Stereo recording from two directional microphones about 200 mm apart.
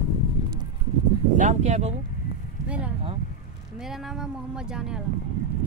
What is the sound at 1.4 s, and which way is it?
Speech, 35° right (ahead or behind).